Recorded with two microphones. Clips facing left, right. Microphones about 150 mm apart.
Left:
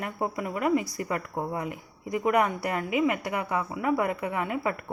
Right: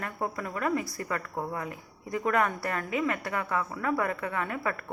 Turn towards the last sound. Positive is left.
turn(degrees=15)  # may be behind; listen again after turning